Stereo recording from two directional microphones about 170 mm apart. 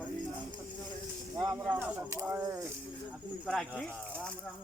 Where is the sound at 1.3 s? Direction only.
15° right (ahead or behind).